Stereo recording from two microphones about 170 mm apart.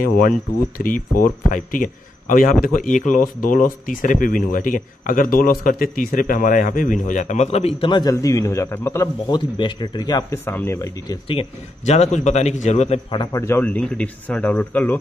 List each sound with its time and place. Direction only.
0.7 s speech: 55° left (ahead or behind); by 9.1 s 15° left (ahead or behind)
9.3 s speech: 25° left (ahead or behind)
11.2 s a man's voice: 35° left (ahead or behind)
13.2 s speech: 20° left (ahead or behind)